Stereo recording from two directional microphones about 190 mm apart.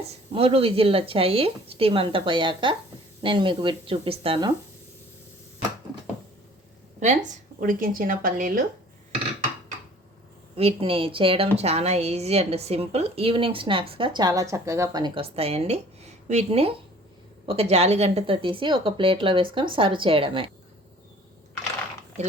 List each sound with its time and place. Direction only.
0.3 s a woman's voice: 30° right (ahead or behind)
7.0 s speech: 40° right (ahead or behind)
10.5 s a woman's voice: 30° right (ahead or behind)